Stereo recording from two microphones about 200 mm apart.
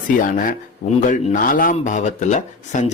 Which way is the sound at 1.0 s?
40° left (ahead or behind).